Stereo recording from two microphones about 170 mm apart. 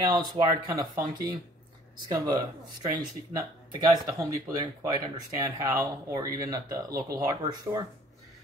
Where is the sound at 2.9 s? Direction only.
25° right (ahead or behind).